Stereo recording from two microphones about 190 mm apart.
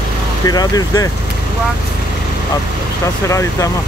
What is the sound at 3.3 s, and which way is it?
Speech, 15° left (ahead or behind).